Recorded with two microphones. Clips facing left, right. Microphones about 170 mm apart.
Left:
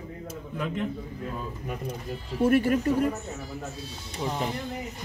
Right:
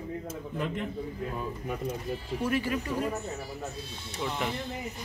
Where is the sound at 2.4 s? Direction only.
50° left (ahead or behind).